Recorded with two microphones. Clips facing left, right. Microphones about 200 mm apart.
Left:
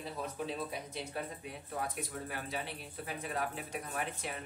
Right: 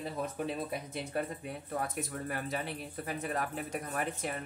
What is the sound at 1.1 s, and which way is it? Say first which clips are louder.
Speech: right 5 dB; 55° right (ahead or behind).